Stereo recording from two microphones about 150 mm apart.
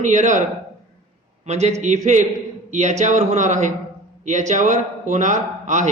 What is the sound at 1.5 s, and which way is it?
A man's voice, 45° right (ahead or behind).